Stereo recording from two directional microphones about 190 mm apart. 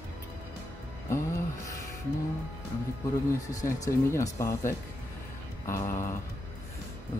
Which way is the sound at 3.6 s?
15° left (ahead or behind).